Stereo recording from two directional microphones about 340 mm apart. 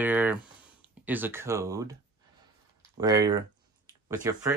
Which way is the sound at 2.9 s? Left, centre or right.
Centre.